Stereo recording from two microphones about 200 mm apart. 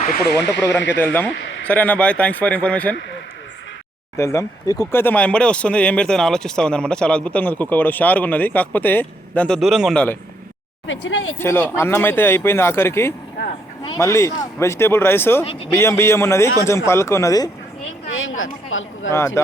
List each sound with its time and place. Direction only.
0.2 s speech: 55° left (ahead or behind)
0.9 s speech: 10° left (ahead or behind)
4.2 s speech: 15° left (ahead or behind)
10.8 s speech: 70° left (ahead or behind)
11.3 s speech: 10° left (ahead or behind)
18.1 s speech: 80° left
19.1 s speech: 10° left (ahead or behind)